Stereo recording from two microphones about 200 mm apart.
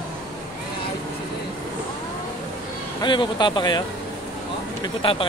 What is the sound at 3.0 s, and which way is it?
Speech, 25° left (ahead or behind).